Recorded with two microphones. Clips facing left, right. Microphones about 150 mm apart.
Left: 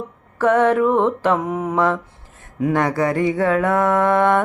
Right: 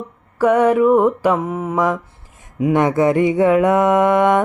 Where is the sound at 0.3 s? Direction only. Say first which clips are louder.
Right 2 dB; 10° right (ahead or behind).